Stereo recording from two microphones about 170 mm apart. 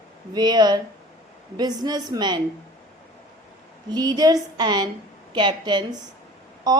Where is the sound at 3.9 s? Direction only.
25° right (ahead or behind).